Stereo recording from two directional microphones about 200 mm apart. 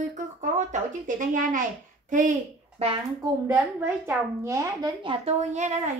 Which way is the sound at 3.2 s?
10° right (ahead or behind).